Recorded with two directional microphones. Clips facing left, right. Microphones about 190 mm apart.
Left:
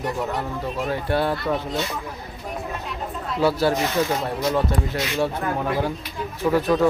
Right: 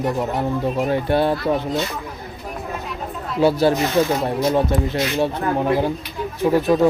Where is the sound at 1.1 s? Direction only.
20° right (ahead or behind).